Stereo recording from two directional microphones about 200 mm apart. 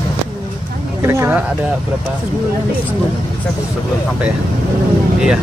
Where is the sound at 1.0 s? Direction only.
10° right (ahead or behind).